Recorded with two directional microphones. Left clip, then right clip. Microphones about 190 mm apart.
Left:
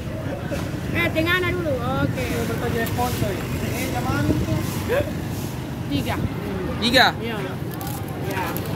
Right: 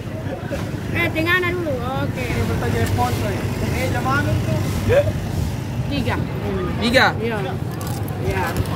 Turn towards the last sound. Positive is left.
turn(degrees=0)  # may be behind; listen again after turning